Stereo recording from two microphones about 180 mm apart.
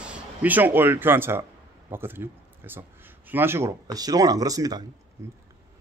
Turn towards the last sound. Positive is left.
turn(degrees=-20)  # may be behind; listen again after turning